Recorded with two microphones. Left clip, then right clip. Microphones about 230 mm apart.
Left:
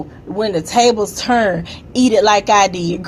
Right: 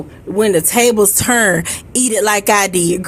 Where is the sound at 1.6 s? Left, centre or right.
Right.